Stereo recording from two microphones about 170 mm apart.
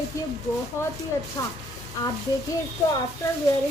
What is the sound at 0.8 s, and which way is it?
Speech, 15° left (ahead or behind).